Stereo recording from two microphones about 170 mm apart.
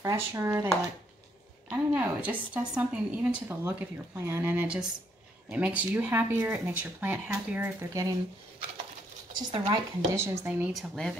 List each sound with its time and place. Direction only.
0.0 s a woman's voice: 15° right (ahead or behind)
1.7 s a woman's voice: 10° right (ahead or behind)
9.4 s a woman's voice: 25° right (ahead or behind)
10.7 s speech: centre (ahead or behind)